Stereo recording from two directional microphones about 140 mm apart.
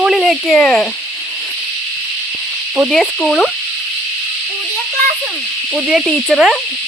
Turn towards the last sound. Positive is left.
turn(degrees=0)  # may be behind; listen again after turning